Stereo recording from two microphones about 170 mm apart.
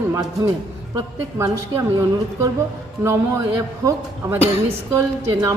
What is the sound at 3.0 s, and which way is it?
A woman's voice, 15° right (ahead or behind).